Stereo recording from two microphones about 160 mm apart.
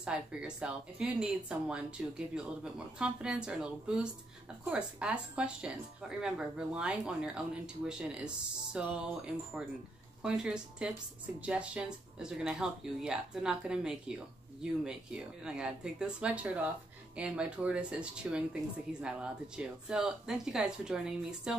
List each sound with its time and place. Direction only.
0.0 s speech: 5° right (ahead or behind)